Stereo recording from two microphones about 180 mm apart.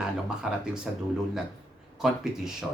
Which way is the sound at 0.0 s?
5° right (ahead or behind).